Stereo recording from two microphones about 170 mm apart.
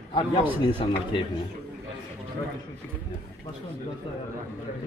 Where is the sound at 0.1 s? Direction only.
30° left (ahead or behind).